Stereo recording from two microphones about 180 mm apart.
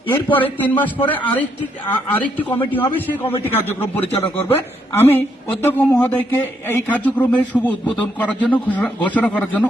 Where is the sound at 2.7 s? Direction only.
10° left (ahead or behind).